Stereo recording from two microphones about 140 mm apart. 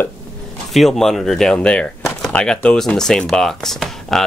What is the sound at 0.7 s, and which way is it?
Speech, centre (ahead or behind).